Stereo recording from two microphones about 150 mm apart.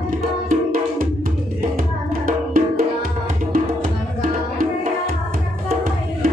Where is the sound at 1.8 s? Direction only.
70° right (ahead or behind).